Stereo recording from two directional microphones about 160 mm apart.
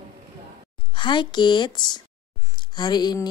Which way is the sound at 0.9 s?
30° left (ahead or behind).